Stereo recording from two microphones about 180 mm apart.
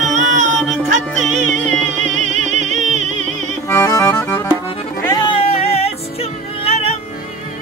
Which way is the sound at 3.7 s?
15° left (ahead or behind).